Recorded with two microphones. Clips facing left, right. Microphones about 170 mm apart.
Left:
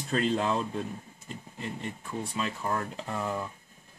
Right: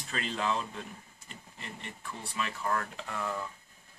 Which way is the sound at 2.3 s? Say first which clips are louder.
Even; 25° left (ahead or behind).